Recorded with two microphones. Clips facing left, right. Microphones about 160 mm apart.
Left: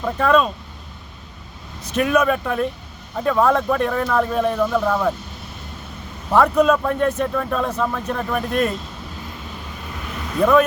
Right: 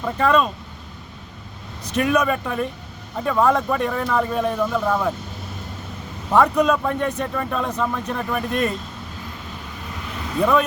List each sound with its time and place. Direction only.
0.0 s speech: centre (ahead or behind)
2.0 s speech: centre (ahead or behind)
6.3 s speech: centre (ahead or behind)
10.4 s speech: centre (ahead or behind)